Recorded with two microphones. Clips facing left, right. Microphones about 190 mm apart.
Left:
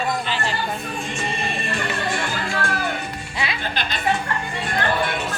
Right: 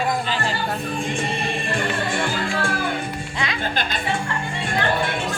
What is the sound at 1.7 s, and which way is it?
Music, 50° right (ahead or behind).